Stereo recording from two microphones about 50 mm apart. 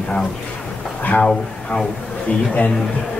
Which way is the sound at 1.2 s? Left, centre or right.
Centre.